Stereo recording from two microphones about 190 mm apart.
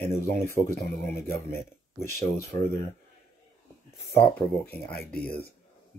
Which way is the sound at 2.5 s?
25° left (ahead or behind).